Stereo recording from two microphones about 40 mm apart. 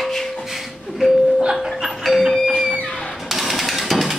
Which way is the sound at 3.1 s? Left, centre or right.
Centre.